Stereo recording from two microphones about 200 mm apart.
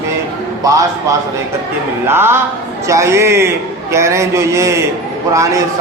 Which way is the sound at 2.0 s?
10° right (ahead or behind).